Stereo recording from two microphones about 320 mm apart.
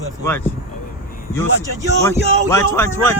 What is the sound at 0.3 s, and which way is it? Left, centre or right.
Speech, centre.